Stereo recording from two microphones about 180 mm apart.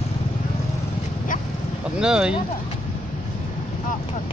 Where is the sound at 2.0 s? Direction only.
5° right (ahead or behind).